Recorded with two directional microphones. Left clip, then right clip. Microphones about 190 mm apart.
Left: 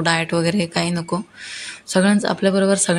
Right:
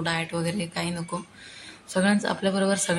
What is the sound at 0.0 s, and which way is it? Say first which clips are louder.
Speech: left 9 dB; 35° left (ahead or behind).